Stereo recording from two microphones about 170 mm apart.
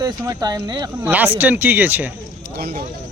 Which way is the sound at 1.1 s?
10° right (ahead or behind).